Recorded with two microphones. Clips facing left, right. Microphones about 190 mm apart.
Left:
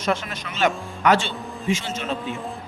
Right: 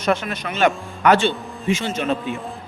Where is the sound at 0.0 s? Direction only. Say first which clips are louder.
Right 4 dB; 60° right (ahead or behind).